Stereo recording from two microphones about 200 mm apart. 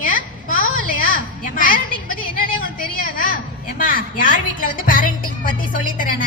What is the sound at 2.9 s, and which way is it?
Speech, 45° left (ahead or behind).